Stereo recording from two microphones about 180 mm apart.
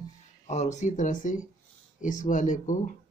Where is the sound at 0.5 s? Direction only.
40° left (ahead or behind).